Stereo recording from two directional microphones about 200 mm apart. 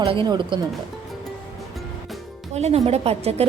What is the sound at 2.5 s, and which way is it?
Speech, 35° right (ahead or behind).